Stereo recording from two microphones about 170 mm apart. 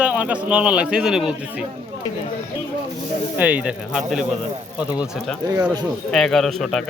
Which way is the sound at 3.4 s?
10° right (ahead or behind).